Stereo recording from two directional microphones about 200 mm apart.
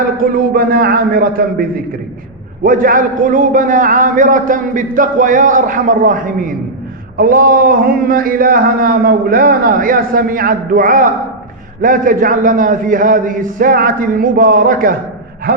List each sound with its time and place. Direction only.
0.2 s a man's voice: 45° right (ahead or behind)